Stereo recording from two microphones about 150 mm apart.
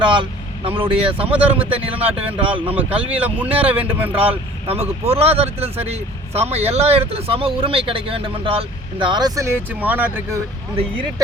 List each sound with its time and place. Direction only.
0.0 s speech: 35° right (ahead or behind)
1.3 s a man's voice: 10° right (ahead or behind)
2.4 s speech: 35° right (ahead or behind)
3.2 s a man's voice: 10° right (ahead or behind)
4.2 s speech: 40° right (ahead or behind); by 10.4 s 15° right (ahead or behind)